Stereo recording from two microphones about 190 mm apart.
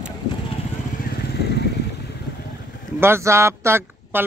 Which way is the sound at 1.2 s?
60° left (ahead or behind).